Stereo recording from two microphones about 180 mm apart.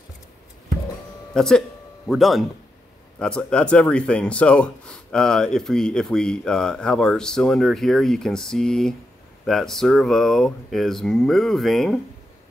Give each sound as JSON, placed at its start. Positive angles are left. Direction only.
{"t": 1.3, "sound": "speech", "side_deg": 5}